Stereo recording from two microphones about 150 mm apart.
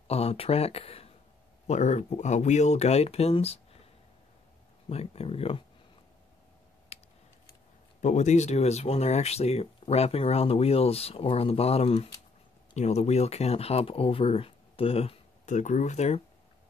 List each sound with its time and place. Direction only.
0.1 s speech: 40° left (ahead or behind)
4.8 s speech: 40° left (ahead or behind)
6.9 s typing: 40° left (ahead or behind)
8.0 s speech: 50° left (ahead or behind)